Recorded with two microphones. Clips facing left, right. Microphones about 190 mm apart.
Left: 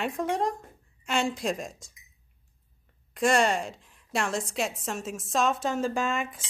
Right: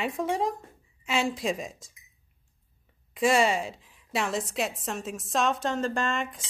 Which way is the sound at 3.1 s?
5° right (ahead or behind).